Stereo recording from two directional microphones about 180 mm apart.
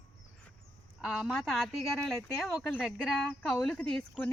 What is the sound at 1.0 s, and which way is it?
Speech, centre (ahead or behind).